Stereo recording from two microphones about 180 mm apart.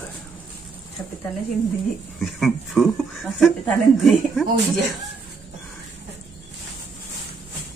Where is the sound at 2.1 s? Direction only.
Centre (ahead or behind).